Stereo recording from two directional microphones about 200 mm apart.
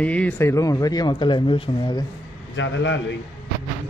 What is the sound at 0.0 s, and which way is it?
Speech, 5° left (ahead or behind).